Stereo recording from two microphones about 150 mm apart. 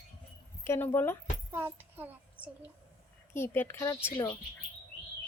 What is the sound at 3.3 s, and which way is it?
Speech, 15° left (ahead or behind).